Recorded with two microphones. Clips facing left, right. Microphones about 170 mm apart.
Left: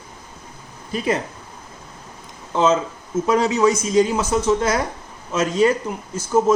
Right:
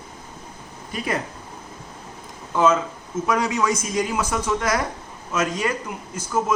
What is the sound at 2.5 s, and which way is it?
Speech, 25° left (ahead or behind).